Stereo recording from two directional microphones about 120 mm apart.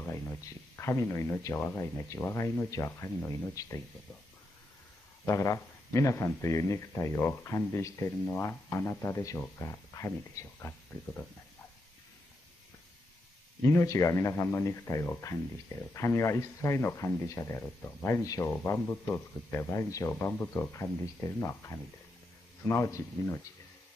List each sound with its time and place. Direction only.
0.0 s a sound: 20° left (ahead or behind)
0.7 s speech: 20° left (ahead or behind)
5.2 s speech: 25° left (ahead or behind)
13.6 s speech: 25° left (ahead or behind)
18.5 s speech: 15° left (ahead or behind)